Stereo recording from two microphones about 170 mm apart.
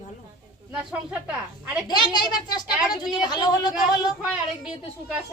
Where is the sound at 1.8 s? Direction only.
25° left (ahead or behind).